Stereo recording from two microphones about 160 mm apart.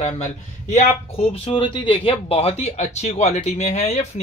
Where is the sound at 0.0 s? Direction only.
50° left (ahead or behind).